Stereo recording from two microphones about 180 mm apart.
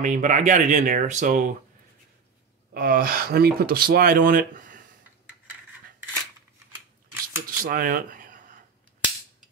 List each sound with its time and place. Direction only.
0.0 s speech: 45° right (ahead or behind)
2.7 s speech: 50° right (ahead or behind)
7.4 s speech: 50° right (ahead or behind)